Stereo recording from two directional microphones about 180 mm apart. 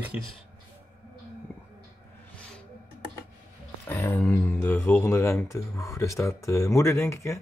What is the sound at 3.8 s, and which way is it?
Speech, 15° left (ahead or behind).